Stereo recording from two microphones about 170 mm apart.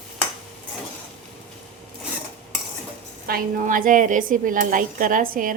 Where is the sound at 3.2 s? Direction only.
55° right (ahead or behind).